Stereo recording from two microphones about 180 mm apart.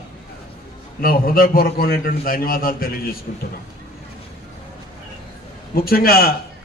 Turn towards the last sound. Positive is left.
turn(degrees=55)  # may be behind; listen again after turning